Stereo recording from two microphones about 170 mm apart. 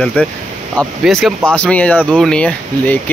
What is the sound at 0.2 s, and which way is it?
Speech, 10° left (ahead or behind).